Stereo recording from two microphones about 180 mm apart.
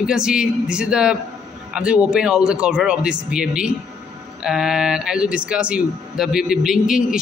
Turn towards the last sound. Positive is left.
turn(degrees=-5)  # may be behind; listen again after turning